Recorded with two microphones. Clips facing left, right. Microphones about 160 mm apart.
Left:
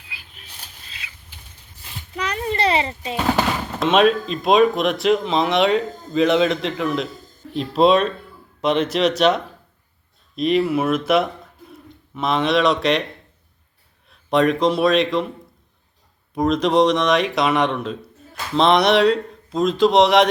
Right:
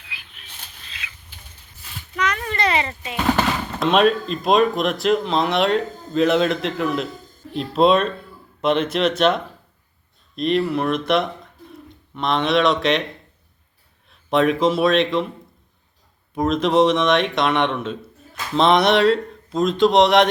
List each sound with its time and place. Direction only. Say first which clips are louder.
0.9 s patter: right 3 dB; 35° left (ahead or behind)
1.8 s a sound: right 3 dB; 30° left (ahead or behind)
3.2 s speech: even; 5° left (ahead or behind)
14.1 s speech: left 1 dB; centre (ahead or behind)
16.3 s speech: left 1 dB; centre (ahead or behind)